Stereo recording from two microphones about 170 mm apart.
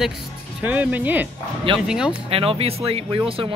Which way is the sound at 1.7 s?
30° right (ahead or behind).